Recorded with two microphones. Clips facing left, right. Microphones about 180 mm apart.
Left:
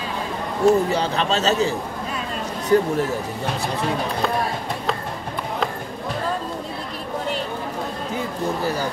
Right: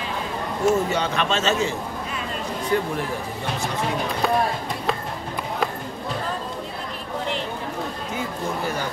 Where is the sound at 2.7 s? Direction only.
40° left (ahead or behind).